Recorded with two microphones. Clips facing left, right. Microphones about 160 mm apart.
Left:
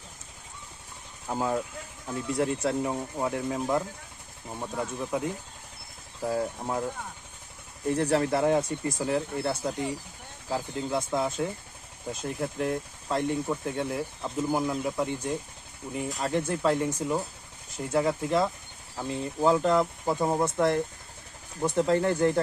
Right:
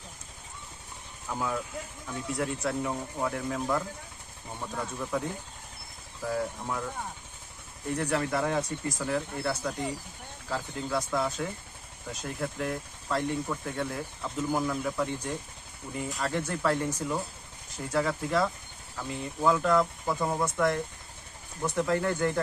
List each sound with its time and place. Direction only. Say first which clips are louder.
1.3 s speech: left 4 dB; 35° left (ahead or behind)
6.2 s speech: left 2 dB; 30° left (ahead or behind)